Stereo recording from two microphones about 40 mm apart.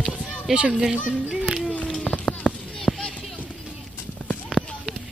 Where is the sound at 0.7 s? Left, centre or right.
Centre.